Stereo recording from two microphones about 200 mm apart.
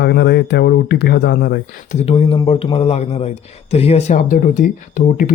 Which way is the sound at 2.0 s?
25° left (ahead or behind).